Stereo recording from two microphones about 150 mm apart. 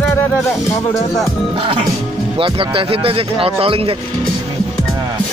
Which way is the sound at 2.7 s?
35° right (ahead or behind).